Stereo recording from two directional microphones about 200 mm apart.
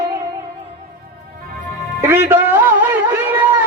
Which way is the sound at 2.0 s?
10° right (ahead or behind).